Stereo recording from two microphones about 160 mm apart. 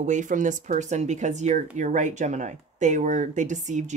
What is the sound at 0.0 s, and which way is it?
Speech, 50° right (ahead or behind).